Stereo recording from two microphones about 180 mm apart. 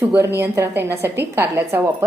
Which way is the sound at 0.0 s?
10° right (ahead or behind).